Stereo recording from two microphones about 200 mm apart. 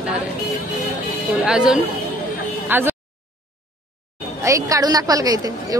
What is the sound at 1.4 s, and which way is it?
A woman's voice, 5° right (ahead or behind).